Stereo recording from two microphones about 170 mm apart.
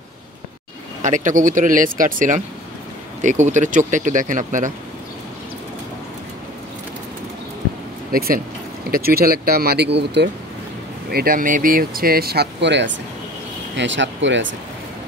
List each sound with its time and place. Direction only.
1.0 s speech: 50° right (ahead or behind)
8.1 s speech: 60° right (ahead or behind); by 10.3 s 90° right
11.1 s speech: 60° right (ahead or behind); by 14.5 s 90° right